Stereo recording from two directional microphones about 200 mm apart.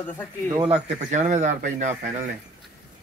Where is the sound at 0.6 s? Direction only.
35° right (ahead or behind).